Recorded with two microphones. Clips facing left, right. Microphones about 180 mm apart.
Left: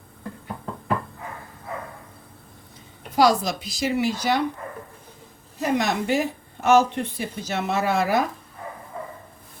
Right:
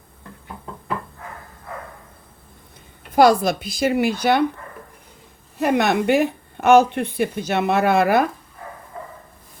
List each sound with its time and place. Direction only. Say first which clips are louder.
3.2 s a woman's voice: right 5 dB; 55° right (ahead or behind)
5.5 s a woman's voice: right 5 dB; 65° right (ahead or behind)